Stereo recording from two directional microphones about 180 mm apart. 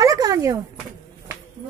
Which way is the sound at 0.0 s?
20° right (ahead or behind).